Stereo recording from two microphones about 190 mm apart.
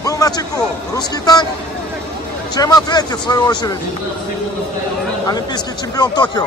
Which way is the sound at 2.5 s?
20° left (ahead or behind).